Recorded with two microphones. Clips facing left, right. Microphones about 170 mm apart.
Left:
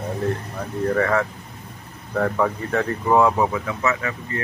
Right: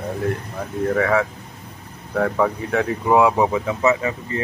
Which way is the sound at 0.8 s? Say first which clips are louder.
Right 1 dB; 5° right (ahead or behind).